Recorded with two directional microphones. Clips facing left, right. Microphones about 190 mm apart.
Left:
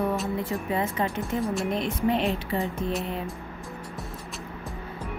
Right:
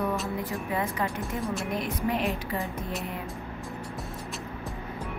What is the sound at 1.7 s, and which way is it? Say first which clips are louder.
Speech: left 3 dB; 25° left (ahead or behind).